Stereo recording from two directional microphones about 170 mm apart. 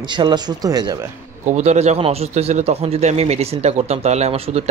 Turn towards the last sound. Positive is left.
turn(degrees=-35)  # may be behind; listen again after turning